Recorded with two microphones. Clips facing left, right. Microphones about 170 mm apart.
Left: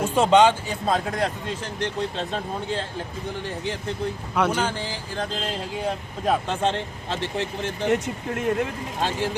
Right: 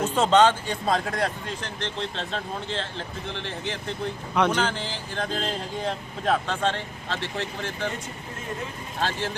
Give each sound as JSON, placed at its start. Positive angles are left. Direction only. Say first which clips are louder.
{"t": 0.0, "sound": "speech", "louder": "left 2 dB", "side_deg": 10}
{"t": 1.8, "sound": "speech", "louder": "left 5 dB", "side_deg": 10}
{"t": 4.4, "sound": "speech", "louder": "even", "side_deg": 10}
{"t": 7.9, "sound": "speech", "louder": "left 10 dB", "side_deg": 70}
{"t": 9.0, "sound": "speech", "louder": "left 2 dB", "side_deg": 15}